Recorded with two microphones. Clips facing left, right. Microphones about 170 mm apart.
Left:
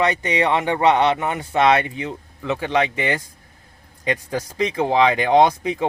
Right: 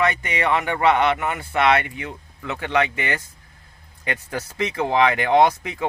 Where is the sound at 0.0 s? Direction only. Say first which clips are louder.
Left 3 dB; 20° left (ahead or behind).